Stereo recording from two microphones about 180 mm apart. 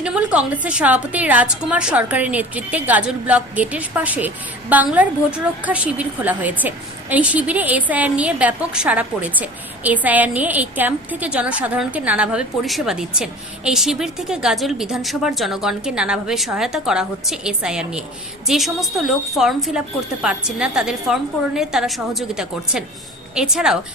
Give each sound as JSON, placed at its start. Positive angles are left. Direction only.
{"t": 0.0, "sound": "a woman's voice", "side_deg": -5}